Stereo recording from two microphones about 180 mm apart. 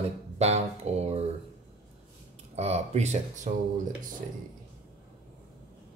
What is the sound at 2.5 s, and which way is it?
Speech, 35° right (ahead or behind).